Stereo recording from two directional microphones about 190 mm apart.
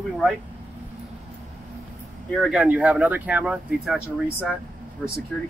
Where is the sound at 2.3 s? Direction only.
Centre (ahead or behind).